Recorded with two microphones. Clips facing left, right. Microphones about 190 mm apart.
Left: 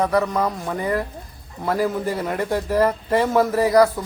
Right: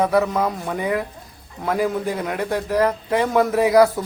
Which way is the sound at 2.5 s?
10° left (ahead or behind).